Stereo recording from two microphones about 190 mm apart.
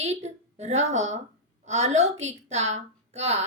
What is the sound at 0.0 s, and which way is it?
A woman's voice, 35° right (ahead or behind).